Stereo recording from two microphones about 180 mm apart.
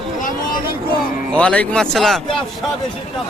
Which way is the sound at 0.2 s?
45° left (ahead or behind).